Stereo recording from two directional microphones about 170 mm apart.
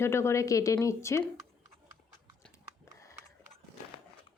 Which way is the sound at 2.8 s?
15° left (ahead or behind).